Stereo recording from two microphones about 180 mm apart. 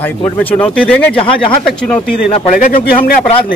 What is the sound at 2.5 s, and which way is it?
Speech, 50° left (ahead or behind).